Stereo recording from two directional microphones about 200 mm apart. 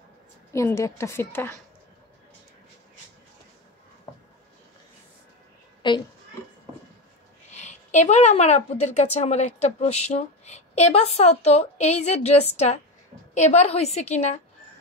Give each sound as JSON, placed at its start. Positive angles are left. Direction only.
{"t": 0.5, "sound": "a woman's voice", "side_deg": 15}
{"t": 5.8, "sound": "a sound", "side_deg": 25}
{"t": 7.5, "sound": "a woman's voice", "side_deg": 35}